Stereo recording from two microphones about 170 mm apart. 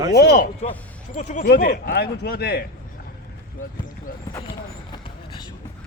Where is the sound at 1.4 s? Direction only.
70° left (ahead or behind).